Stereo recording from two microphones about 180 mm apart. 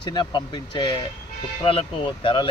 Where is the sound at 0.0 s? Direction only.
25° left (ahead or behind).